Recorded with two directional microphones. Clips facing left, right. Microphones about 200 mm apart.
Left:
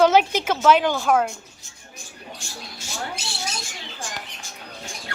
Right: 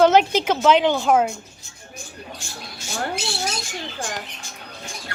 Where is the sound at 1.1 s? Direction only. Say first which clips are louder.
Right 1 dB; 5° right (ahead or behind).